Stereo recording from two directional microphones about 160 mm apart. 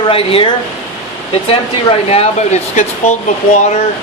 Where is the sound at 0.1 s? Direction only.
35° left (ahead or behind).